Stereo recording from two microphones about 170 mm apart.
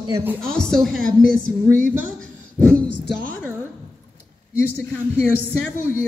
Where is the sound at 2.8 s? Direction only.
90° left.